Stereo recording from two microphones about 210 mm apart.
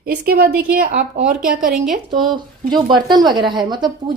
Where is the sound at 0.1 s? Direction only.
45° right (ahead or behind).